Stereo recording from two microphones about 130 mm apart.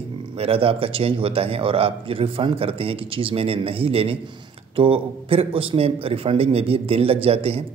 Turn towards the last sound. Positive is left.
turn(degrees=-50)  # may be behind; listen again after turning